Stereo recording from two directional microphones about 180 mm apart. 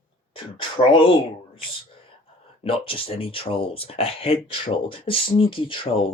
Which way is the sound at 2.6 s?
30° left (ahead or behind).